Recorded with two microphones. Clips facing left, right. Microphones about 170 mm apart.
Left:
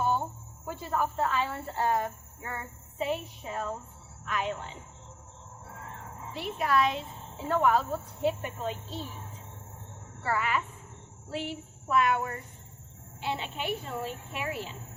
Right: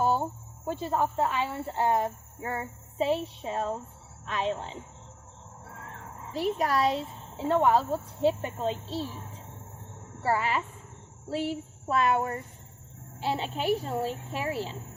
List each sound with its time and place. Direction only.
0.0 s a woman's voice: 35° right (ahead or behind)
6.3 s a woman's voice: 40° right (ahead or behind)
10.2 s a woman's voice: 30° right (ahead or behind)